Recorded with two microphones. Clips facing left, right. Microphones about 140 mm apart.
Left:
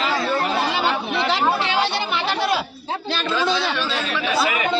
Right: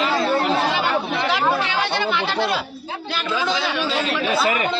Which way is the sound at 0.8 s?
25° left (ahead or behind).